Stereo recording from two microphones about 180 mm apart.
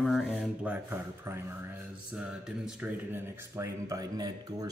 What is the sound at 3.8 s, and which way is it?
Speech, 20° right (ahead or behind).